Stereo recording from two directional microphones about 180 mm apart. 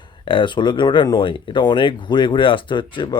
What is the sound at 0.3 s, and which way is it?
Speech, 25° left (ahead or behind).